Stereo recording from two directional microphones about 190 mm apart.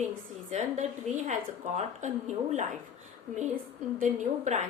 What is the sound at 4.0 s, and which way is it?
Speech, 40° right (ahead or behind).